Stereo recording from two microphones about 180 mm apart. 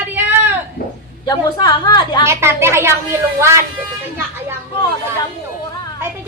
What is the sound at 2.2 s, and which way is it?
A woman's voice, 15° right (ahead or behind).